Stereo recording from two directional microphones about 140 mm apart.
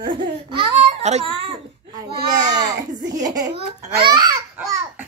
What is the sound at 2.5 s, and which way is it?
A child's voice, 30° right (ahead or behind).